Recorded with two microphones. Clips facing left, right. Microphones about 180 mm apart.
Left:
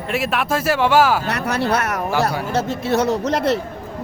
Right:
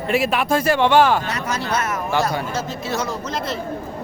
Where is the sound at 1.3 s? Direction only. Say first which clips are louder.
Left 4 dB; 65° left (ahead or behind).